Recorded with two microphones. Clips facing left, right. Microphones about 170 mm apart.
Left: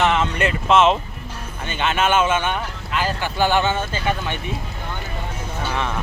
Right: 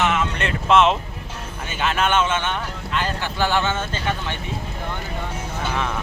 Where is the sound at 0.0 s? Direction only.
30° left (ahead or behind).